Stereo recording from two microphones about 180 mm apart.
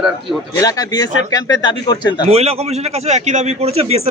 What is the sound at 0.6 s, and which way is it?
Speech, 20° left (ahead or behind).